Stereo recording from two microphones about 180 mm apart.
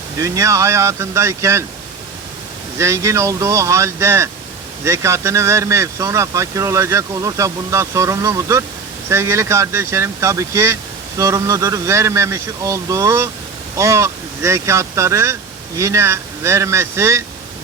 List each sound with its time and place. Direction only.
0.2 s speech: 20° right (ahead or behind)
2.7 s speech: 15° right (ahead or behind)